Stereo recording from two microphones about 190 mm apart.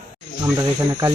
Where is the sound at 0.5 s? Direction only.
15° right (ahead or behind).